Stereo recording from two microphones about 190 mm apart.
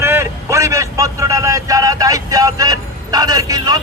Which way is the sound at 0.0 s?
15° right (ahead or behind).